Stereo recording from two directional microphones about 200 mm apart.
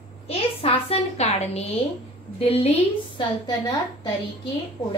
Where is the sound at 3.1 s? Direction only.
20° left (ahead or behind).